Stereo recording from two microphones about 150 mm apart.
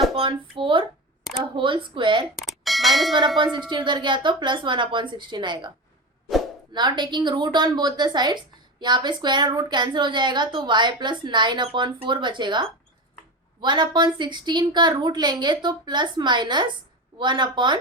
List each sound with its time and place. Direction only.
0.2 s a woman's voice: 35° right (ahead or behind)
2.4 s bell: centre (ahead or behind)
3.7 s a woman's voice: 30° right (ahead or behind)
6.7 s a woman's voice: 30° right (ahead or behind)